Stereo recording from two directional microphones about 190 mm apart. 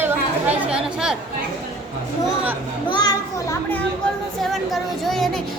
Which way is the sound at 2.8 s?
20° left (ahead or behind).